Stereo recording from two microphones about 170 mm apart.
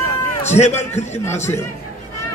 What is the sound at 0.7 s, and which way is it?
Speech, 15° left (ahead or behind).